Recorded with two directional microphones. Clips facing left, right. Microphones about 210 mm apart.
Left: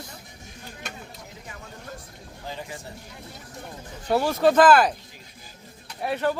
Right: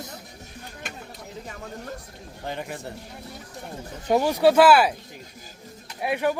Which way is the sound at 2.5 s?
60° right (ahead or behind).